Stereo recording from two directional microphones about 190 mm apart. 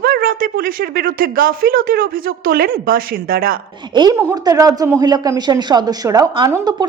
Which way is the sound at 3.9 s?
25° right (ahead or behind).